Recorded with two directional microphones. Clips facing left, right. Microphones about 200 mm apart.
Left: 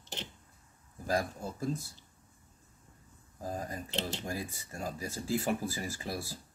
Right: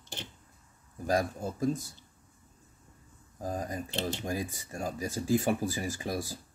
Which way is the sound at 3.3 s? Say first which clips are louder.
Right 3 dB; 15° right (ahead or behind).